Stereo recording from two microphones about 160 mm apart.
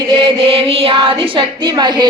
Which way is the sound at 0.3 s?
35° right (ahead or behind).